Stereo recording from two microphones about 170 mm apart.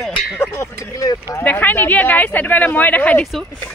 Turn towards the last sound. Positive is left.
turn(degrees=0)  # may be behind; listen again after turning